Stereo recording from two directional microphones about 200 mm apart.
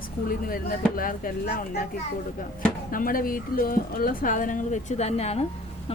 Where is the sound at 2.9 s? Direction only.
45° left (ahead or behind).